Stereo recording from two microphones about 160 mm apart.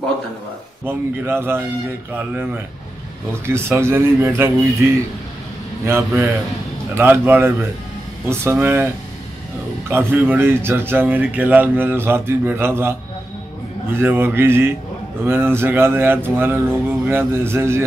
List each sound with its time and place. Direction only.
0.8 s speech: 15° right (ahead or behind)
5.9 s speech: 15° right (ahead or behind)
9.8 s speech: 15° right (ahead or behind)
13.9 s speech: 15° right (ahead or behind)